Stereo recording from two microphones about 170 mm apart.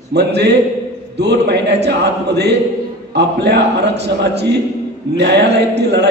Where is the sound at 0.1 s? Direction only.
80° right.